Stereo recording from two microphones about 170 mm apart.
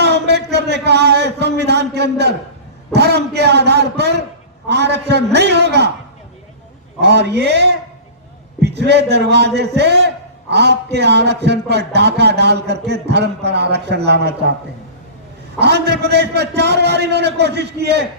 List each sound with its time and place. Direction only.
0.0 s a sound: 80° right
2.9 s a man's voice: 75° right (ahead or behind)
7.0 s a man's voice: 80° right
15.5 s a man's voice: 75° right (ahead or behind)